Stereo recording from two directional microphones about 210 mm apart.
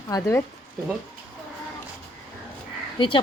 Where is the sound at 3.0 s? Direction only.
25° left (ahead or behind).